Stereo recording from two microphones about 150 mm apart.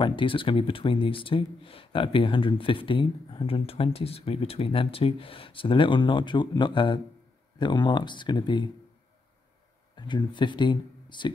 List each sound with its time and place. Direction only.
0.0 s speech: 35° left (ahead or behind)
9.9 s speech: 30° left (ahead or behind)